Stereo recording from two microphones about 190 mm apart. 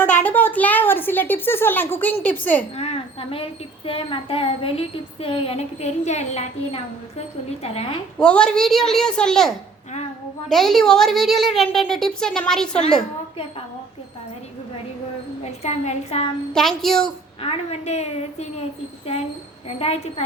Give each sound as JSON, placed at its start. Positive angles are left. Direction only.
{"t": 0.0, "sound": "speech", "side_deg": 10}
{"t": 2.7, "sound": "a woman's voice", "side_deg": 35}
{"t": 8.2, "sound": "speech", "side_deg": 5}
{"t": 10.5, "sound": "speech", "side_deg": 0}
{"t": 15.6, "sound": "a woman's voice", "side_deg": 35}
{"t": 16.5, "sound": "speech", "side_deg": 0}
{"t": 17.4, "sound": "a woman's voice", "side_deg": 30}
{"t": 19.6, "sound": "a woman's voice", "side_deg": 35}